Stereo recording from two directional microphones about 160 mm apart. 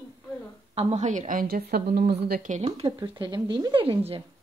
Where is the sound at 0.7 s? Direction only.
45° right (ahead or behind); by 2.5 s 70° right (ahead or behind).